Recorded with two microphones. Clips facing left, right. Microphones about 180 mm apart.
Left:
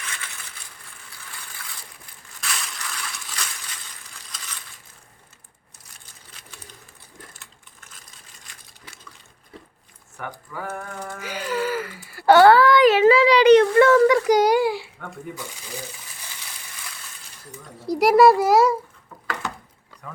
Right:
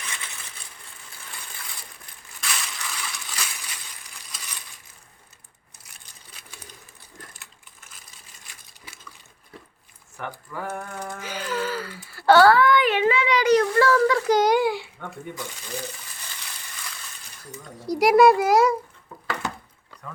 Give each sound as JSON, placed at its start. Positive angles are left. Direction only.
{"t": 2.4, "sound": "crushing", "side_deg": 0}
{"t": 7.3, "sound": "a sound", "side_deg": -5}
{"t": 10.2, "sound": "a child's voice", "side_deg": 5}
{"t": 11.2, "sound": "gasp", "side_deg": 10}
{"t": 12.1, "sound": "wail", "side_deg": 15}
{"t": 12.9, "sound": "a sound", "side_deg": 40}
{"t": 17.7, "sound": "a child's voice", "side_deg": 0}